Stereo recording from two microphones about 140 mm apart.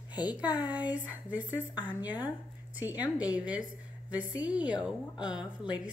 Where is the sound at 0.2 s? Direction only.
30° left (ahead or behind).